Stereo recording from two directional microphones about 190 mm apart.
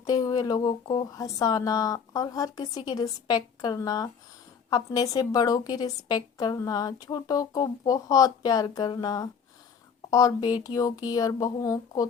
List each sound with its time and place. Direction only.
0.0 s a woman's voice: 20° left (ahead or behind)